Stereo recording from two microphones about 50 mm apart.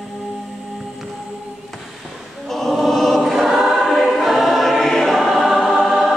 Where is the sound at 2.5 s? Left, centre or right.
Centre.